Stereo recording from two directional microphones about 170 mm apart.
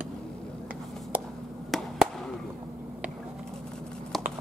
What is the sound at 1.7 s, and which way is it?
Chop, centre (ahead or behind).